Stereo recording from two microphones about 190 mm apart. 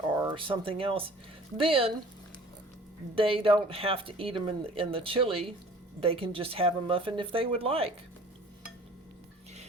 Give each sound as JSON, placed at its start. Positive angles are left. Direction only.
{"t": 0.2, "sound": "speech", "side_deg": -25}
{"t": 3.2, "sound": "speech", "side_deg": -30}